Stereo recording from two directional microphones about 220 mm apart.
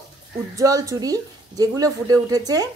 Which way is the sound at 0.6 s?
15° right (ahead or behind).